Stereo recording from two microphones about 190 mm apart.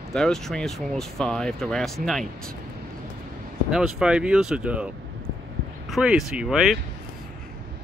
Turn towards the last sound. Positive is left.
turn(degrees=0)  # may be behind; listen again after turning